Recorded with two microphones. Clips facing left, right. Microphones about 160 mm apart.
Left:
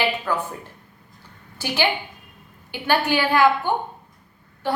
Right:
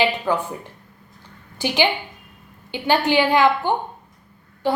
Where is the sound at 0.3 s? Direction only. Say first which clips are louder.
Right 3 dB; 15° right (ahead or behind).